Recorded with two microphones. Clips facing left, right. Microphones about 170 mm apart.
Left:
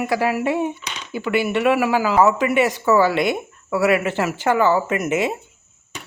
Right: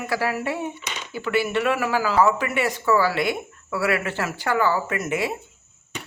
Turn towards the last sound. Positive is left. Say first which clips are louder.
# left 5 dB
turn(degrees=20)  # may be behind; listen again after turning